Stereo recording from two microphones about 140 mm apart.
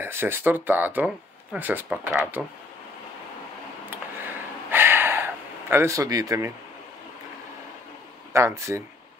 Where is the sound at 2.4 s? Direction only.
Centre (ahead or behind).